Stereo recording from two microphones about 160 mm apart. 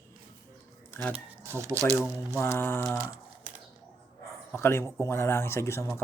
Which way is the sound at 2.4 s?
15° left (ahead or behind).